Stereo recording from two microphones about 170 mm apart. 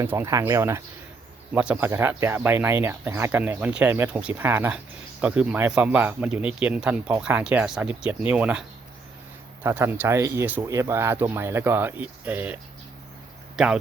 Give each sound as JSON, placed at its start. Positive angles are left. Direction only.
{"t": 0.0, "sound": "speech", "side_deg": -15}
{"t": 9.6, "sound": "speech", "side_deg": -15}
{"t": 13.6, "sound": "speech", "side_deg": 0}